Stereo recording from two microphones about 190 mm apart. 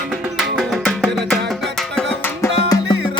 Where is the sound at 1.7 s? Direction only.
5° left (ahead or behind).